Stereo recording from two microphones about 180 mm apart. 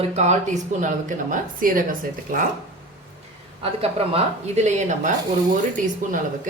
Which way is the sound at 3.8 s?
35° right (ahead or behind).